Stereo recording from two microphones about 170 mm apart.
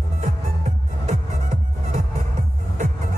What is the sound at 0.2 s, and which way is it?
Music, 45° right (ahead or behind).